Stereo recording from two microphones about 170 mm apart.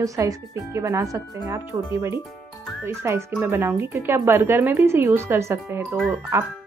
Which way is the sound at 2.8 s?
15° right (ahead or behind).